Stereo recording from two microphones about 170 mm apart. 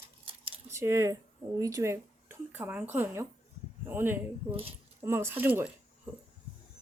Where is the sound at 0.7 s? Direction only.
15° right (ahead or behind).